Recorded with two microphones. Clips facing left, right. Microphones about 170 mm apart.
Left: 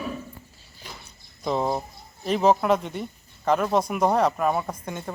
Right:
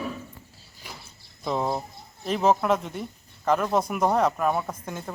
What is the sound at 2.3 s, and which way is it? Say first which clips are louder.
Speech: left 2 dB; centre (ahead or behind).